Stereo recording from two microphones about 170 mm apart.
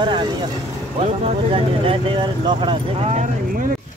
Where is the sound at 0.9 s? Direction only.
35° right (ahead or behind).